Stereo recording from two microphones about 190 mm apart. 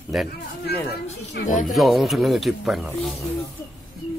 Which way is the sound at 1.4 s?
60° left (ahead or behind).